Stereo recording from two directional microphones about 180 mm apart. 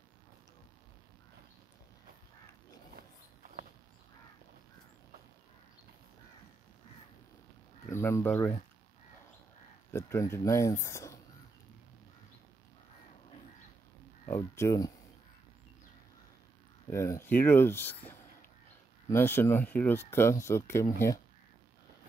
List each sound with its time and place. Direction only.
7.9 s speech: 15° left (ahead or behind)
9.8 s speech: 15° left (ahead or behind)
14.2 s speech: 15° left (ahead or behind)
16.9 s speech: 15° left (ahead or behind)